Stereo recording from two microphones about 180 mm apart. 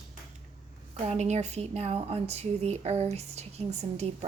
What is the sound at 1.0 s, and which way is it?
Speech, 35° right (ahead or behind).